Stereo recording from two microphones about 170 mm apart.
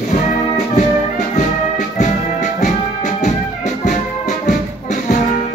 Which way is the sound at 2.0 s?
45° left (ahead or behind).